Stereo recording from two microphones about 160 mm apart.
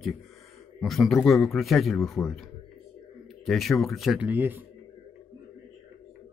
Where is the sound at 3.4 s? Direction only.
Centre (ahead or behind).